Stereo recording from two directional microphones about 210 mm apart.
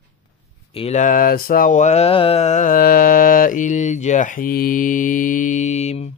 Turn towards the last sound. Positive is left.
turn(degrees=30)  # may be behind; listen again after turning